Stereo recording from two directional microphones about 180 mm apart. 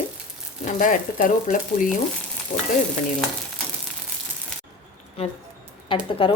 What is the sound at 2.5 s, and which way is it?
Frying, 40° left (ahead or behind).